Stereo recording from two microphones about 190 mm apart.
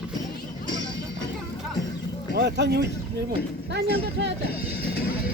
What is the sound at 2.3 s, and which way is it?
Speech, 65° right (ahead or behind).